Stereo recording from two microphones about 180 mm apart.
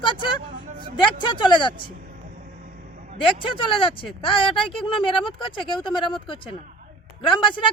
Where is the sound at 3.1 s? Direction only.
30° left (ahead or behind).